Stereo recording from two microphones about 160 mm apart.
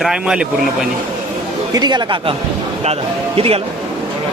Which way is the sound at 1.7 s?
25° right (ahead or behind).